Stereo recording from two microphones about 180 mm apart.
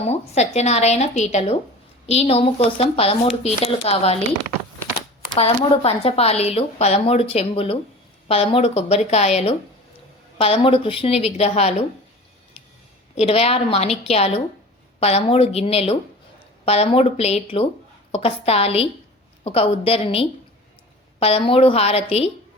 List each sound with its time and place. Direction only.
0.1 s speech: 35° left (ahead or behind)
5.3 s speech: 30° left (ahead or behind)
13.1 s speech: 35° left (ahead or behind)